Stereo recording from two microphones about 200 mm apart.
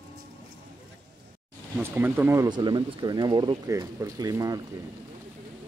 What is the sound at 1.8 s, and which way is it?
Speech, 10° right (ahead or behind).